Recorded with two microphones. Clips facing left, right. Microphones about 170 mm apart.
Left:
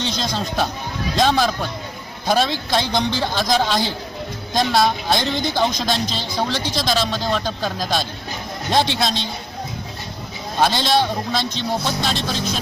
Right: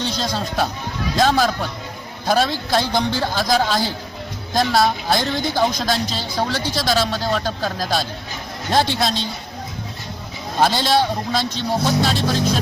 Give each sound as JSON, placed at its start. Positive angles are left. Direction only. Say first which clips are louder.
{"t": 0.0, "sound": "a man's voice", "louder": "even", "side_deg": -5}
{"t": 9.0, "sound": "speech", "louder": "right 1 dB", "side_deg": -10}
{"t": 10.6, "sound": "speech", "louder": "right 1 dB", "side_deg": -10}